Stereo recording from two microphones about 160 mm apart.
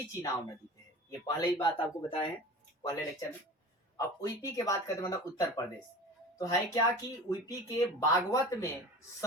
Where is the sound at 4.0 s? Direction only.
20° left (ahead or behind).